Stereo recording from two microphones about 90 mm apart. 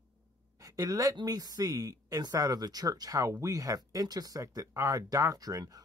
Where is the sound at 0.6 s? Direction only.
40° right (ahead or behind).